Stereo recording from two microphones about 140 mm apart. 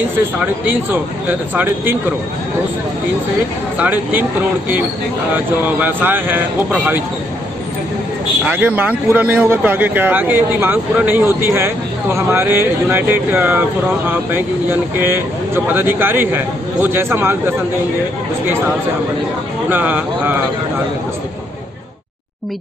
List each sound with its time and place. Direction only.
1.5 s speech: 15° right (ahead or behind)
3.7 s speech: 10° right (ahead or behind)
8.5 s speech: 10° right (ahead or behind)
19.7 s speech: 15° right (ahead or behind)